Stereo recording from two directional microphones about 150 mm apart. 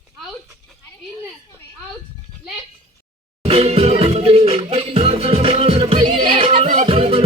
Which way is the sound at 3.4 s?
45° right (ahead or behind).